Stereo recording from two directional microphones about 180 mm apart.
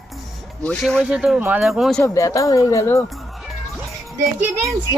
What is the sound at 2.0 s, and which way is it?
Speech, 15° left (ahead or behind).